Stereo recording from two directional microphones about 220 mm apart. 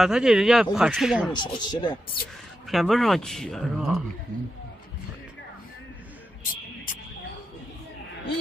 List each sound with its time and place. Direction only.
0.0 s speech: centre (ahead or behind)
1.3 s speech: 20° left (ahead or behind)
2.7 s speech: centre (ahead or behind)
6.4 s music: 40° left (ahead or behind)